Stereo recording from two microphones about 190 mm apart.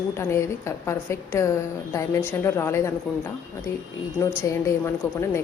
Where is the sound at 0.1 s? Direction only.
15° left (ahead or behind).